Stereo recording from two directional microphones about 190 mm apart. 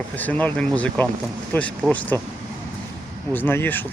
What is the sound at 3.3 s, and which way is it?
Speech, 10° left (ahead or behind).